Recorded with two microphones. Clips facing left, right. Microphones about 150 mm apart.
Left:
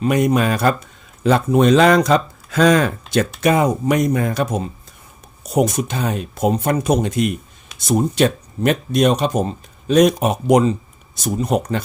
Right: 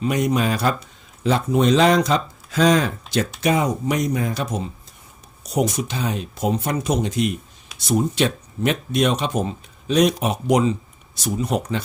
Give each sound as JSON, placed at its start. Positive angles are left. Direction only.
{"t": 0.0, "sound": "speech", "side_deg": 55}